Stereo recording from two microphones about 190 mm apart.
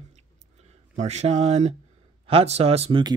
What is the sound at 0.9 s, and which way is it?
Speech, 35° right (ahead or behind).